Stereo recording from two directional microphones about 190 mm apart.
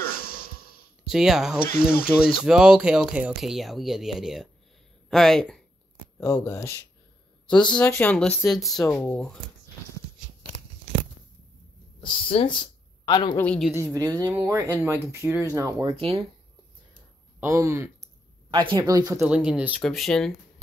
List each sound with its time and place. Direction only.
1.0 s speech: centre (ahead or behind)
1.7 s speech: 50° left (ahead or behind)
2.4 s speech: 5° right (ahead or behind)
6.1 s speech: 15° left (ahead or behind)
7.8 s speech: 10° left (ahead or behind)
12.0 s speech: 25° left (ahead or behind)
13.4 s speech: 5° left (ahead or behind)
13.9 s speech: 20° right (ahead or behind)
15.9 s speech: 30° right (ahead or behind)
17.4 s speech: 15° right (ahead or behind)
19.2 s speech: 5° right (ahead or behind)